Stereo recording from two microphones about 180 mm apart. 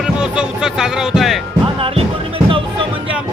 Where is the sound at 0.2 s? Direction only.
5° right (ahead or behind).